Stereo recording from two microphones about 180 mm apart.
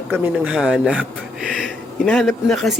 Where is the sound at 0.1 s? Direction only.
10° right (ahead or behind).